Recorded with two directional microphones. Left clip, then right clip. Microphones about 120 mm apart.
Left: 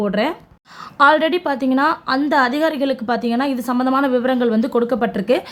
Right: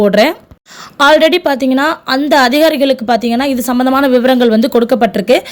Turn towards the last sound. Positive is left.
turn(degrees=-20)  # may be behind; listen again after turning